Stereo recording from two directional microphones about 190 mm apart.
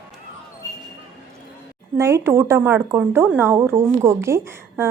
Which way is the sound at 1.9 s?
15° right (ahead or behind).